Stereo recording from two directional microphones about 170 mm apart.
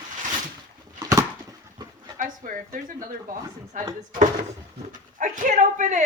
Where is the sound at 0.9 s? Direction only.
20° right (ahead or behind).